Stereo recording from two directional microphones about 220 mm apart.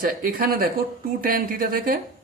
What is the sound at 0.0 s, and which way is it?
Speech, 40° right (ahead or behind).